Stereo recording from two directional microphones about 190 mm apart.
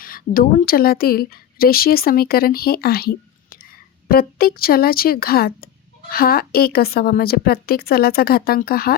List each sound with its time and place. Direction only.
0.0 s a woman's voice: 50° left (ahead or behind)